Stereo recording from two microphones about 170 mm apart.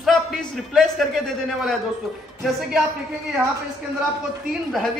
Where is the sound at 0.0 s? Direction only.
Centre (ahead or behind).